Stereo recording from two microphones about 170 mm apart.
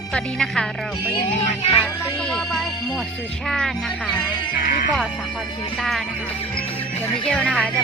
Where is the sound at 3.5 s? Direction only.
5° left (ahead or behind).